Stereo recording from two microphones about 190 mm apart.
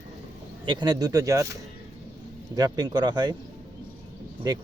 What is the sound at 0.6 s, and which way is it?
Speech, 25° right (ahead or behind).